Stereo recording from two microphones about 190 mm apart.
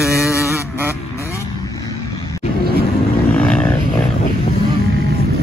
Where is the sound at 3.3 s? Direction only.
5° left (ahead or behind).